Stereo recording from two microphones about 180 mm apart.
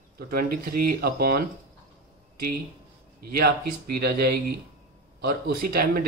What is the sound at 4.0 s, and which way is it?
Speech, 60° right (ahead or behind).